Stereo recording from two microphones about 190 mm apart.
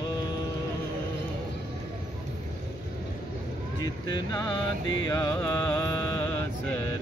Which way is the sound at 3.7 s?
20° left (ahead or behind).